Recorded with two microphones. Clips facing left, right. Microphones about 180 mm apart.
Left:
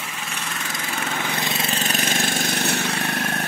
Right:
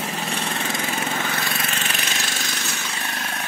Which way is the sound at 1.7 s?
40° left (ahead or behind).